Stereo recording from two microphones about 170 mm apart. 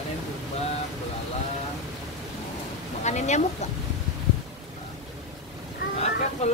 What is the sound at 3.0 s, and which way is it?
Speech, 45° left (ahead or behind).